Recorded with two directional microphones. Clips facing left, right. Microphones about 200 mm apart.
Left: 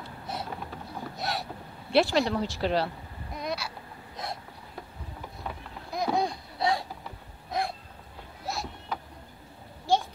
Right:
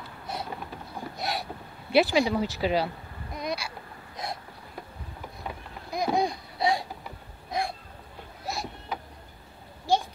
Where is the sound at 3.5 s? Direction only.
5° left (ahead or behind).